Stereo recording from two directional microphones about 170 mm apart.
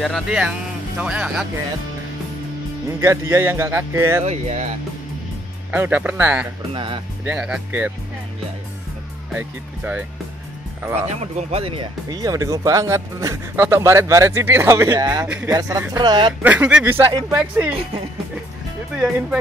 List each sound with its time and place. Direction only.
0.0 s speech: centre (ahead or behind)
3.0 s speech: 15° right (ahead or behind)
4.2 s speech: 40° right (ahead or behind)
5.7 s speech: 10° right (ahead or behind)
6.7 s speech: 30° right (ahead or behind)
7.2 s speech: 5° right (ahead or behind)
9.3 s speech: 10° right (ahead or behind)
11.3 s speech: 35° right (ahead or behind)
16.4 s speech: 10° right (ahead or behind)
18.9 s speech: 5° right (ahead or behind)